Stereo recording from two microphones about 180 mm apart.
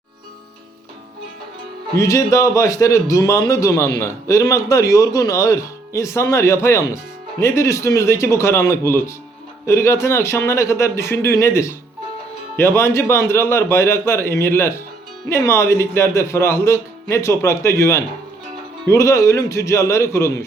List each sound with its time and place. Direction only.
2.0 s a man's voice: 20° left (ahead or behind)